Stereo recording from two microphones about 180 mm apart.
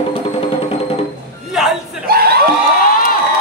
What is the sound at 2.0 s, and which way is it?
Crowd, 60° right (ahead or behind).